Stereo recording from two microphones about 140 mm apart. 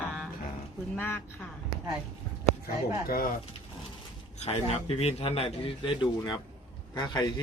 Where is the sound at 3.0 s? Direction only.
90° left.